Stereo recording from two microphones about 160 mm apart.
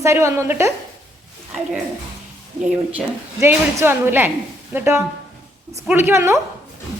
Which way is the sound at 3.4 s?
15° right (ahead or behind).